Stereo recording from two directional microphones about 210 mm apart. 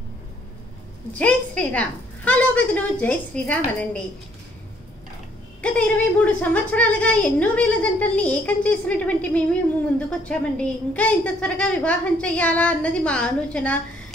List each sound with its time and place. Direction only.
1.1 s a woman's voice: 5° left (ahead or behind)
5.6 s a woman's voice: 5° left (ahead or behind)